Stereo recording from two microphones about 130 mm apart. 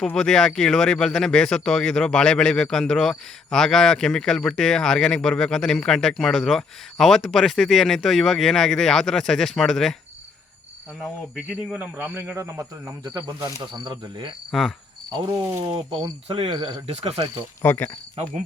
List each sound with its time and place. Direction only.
0.0 s speech: 5° left (ahead or behind)
11.0 s speech: 5° right (ahead or behind)
13.8 s cricket: 40° right (ahead or behind)
15.7 s speech: 40° right (ahead or behind)
17.6 s speech: 15° left (ahead or behind)